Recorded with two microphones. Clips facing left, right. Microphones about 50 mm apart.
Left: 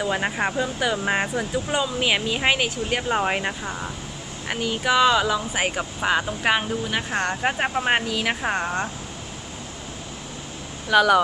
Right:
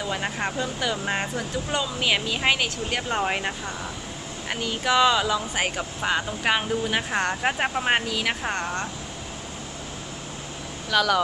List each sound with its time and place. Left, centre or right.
0.0 s speech: centre
6.8 s speech: centre
10.9 s speech: centre